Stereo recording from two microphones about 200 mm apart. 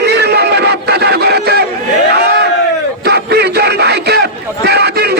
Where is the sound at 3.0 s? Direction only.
55° right (ahead or behind).